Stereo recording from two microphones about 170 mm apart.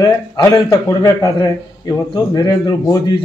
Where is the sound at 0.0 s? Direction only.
20° left (ahead or behind).